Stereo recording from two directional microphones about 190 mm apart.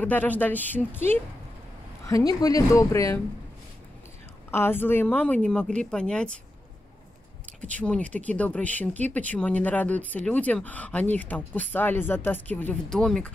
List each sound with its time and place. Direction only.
0.0 s speech: 10° left (ahead or behind)
4.5 s speech: 10° left (ahead or behind)
7.4 s speech: 5° left (ahead or behind)